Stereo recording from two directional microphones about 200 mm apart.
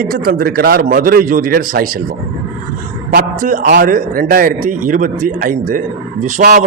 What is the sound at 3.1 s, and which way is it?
A man's voice, 45° right (ahead or behind).